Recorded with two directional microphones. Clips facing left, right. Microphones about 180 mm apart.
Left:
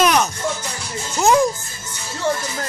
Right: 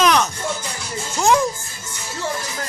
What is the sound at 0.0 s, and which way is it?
Music, 10° left (ahead or behind).